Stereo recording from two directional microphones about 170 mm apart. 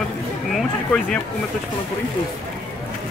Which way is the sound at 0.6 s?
5° left (ahead or behind).